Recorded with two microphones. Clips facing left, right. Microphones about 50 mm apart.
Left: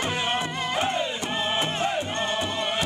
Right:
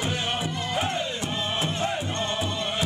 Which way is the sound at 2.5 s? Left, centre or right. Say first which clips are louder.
Left 2 dB; centre.